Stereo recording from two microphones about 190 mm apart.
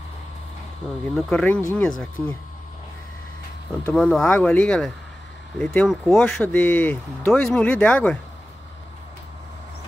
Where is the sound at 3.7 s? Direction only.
5° left (ahead or behind).